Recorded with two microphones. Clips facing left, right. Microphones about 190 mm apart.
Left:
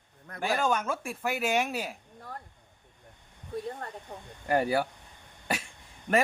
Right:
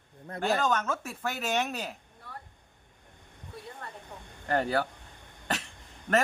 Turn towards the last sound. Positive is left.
turn(degrees=15)  # may be behind; listen again after turning